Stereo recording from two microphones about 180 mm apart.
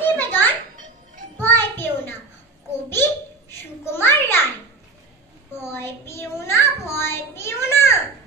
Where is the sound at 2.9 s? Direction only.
15° left (ahead or behind).